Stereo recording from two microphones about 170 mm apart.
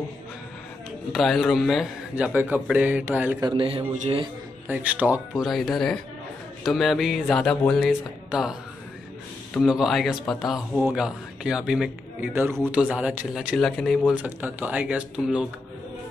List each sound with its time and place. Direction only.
1.1 s a man's voice: centre (ahead or behind)
3.3 s a man's voice: 30° right (ahead or behind)
4.6 s a man's voice: 10° right (ahead or behind)
14.1 s a man's voice: 10° right (ahead or behind)